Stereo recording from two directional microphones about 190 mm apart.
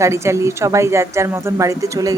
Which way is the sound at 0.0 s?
15° right (ahead or behind).